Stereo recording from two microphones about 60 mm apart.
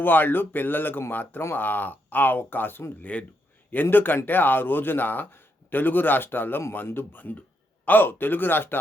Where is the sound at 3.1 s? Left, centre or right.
Left.